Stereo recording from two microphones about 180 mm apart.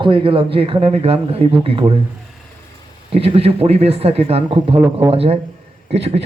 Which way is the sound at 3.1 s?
35° right (ahead or behind).